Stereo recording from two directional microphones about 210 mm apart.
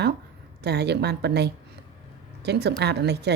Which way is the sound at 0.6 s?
50° right (ahead or behind).